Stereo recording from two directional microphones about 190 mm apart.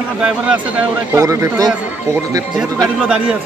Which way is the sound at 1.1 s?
15° right (ahead or behind).